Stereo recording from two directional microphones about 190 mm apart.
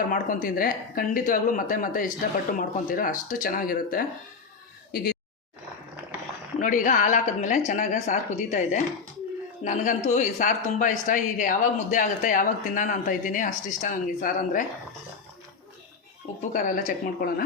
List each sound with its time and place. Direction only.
0.1 s a man's voice: 45° left (ahead or behind)
6.6 s a man's voice: 45° left (ahead or behind)
16.4 s a man's voice: 45° left (ahead or behind)